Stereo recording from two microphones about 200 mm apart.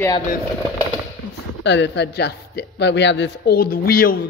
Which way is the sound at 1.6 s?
60° left (ahead or behind).